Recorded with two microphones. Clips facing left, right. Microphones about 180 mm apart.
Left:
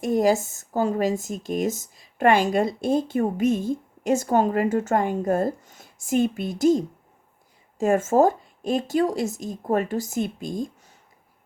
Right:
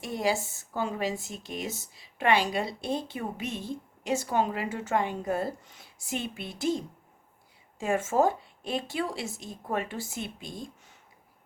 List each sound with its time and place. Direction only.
0.0 s speech: 45° left (ahead or behind)